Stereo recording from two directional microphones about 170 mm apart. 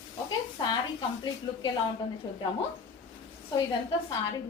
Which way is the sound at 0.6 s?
25° left (ahead or behind).